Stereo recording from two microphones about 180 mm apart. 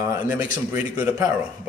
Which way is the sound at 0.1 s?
10° right (ahead or behind).